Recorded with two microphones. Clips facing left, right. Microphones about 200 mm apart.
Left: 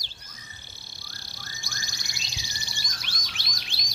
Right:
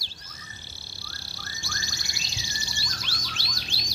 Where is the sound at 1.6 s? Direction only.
15° left (ahead or behind).